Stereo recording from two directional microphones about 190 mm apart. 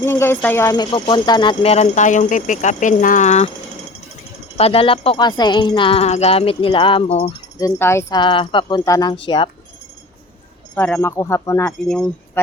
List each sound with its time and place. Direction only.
0.0 s speech: 10° left (ahead or behind); by 3.5 s 35° left (ahead or behind)
4.5 s speech: 30° left (ahead or behind)
7.6 s speech: 15° left (ahead or behind)
10.8 s speech: 10° left (ahead or behind)
11.9 s speech: 5° left (ahead or behind)